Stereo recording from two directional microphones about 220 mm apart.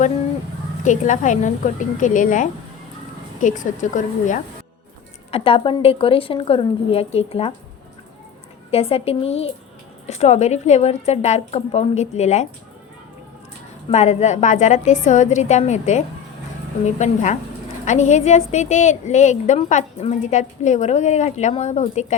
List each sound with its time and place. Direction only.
0.9 s a woman's voice: 35° left (ahead or behind)
5.3 s a woman's voice: 25° left (ahead or behind)
8.7 s a woman's voice: 25° left (ahead or behind)
13.9 s a woman's voice: 30° left (ahead or behind)